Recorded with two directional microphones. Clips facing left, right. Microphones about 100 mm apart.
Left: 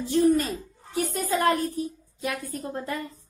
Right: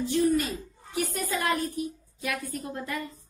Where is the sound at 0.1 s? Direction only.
40° left (ahead or behind).